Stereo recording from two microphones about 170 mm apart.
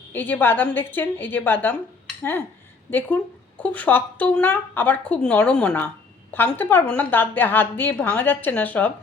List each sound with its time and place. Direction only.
0.1 s a woman's voice: 10° left (ahead or behind)
2.9 s a woman's voice: 10° left (ahead or behind)